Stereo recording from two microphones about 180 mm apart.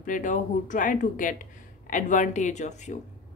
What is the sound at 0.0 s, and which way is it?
Speech, 45° left (ahead or behind).